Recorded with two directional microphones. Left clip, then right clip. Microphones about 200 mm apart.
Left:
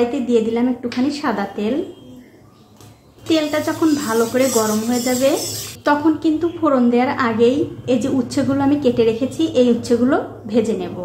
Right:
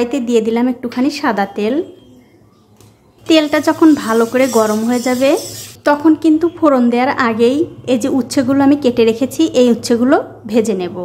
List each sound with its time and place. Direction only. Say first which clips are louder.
0.1 s a woman's voice: right 3 dB; 35° right (ahead or behind)
3.3 s a woman's voice: right 6 dB; 35° right (ahead or behind)